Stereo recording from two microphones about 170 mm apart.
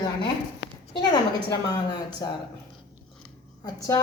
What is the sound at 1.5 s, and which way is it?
Speech, 25° left (ahead or behind).